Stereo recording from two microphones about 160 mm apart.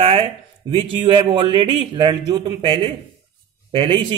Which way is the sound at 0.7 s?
35° right (ahead or behind).